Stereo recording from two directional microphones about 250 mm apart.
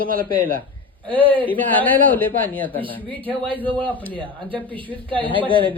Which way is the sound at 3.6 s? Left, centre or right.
Centre.